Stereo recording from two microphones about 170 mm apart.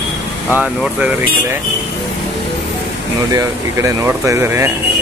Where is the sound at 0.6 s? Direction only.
5° right (ahead or behind).